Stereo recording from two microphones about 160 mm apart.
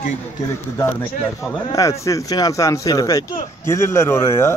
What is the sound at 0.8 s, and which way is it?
A man's voice, 15° left (ahead or behind).